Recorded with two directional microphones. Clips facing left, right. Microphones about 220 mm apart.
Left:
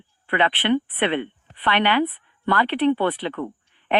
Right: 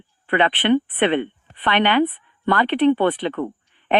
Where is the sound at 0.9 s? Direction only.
45° right (ahead or behind).